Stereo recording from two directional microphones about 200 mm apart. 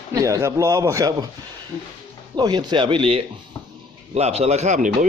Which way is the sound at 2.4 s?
20° right (ahead or behind).